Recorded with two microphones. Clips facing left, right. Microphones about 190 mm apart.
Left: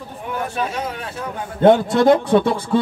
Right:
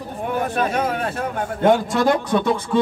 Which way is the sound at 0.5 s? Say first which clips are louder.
Right 4 dB; 55° right (ahead or behind).